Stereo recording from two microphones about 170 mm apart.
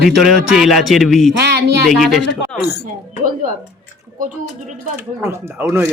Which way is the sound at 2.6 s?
70° left (ahead or behind).